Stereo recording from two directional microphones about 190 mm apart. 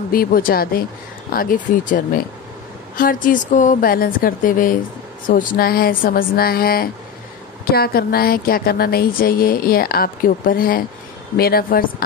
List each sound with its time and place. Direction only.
0.1 s a woman's voice: 50° left (ahead or behind)